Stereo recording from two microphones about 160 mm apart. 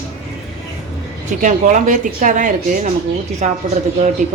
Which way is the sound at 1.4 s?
55° right (ahead or behind).